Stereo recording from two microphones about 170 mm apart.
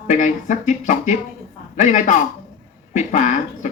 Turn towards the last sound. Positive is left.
turn(degrees=45)  # may be behind; listen again after turning